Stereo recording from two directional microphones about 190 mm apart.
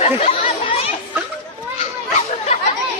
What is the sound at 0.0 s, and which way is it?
Chatter, 30° left (ahead or behind).